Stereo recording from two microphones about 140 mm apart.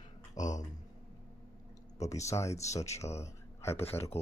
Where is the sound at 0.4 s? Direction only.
25° left (ahead or behind).